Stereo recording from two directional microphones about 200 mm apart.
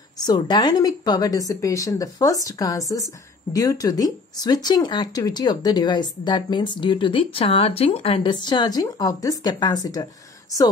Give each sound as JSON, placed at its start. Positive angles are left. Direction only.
{"t": 0.2, "sound": "a woman's voice", "side_deg": 20}